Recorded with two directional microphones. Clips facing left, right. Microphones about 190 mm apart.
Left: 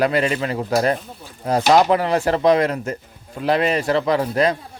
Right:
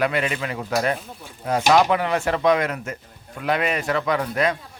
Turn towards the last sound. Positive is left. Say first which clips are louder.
# left 4 dB
turn(degrees=35)  # may be behind; listen again after turning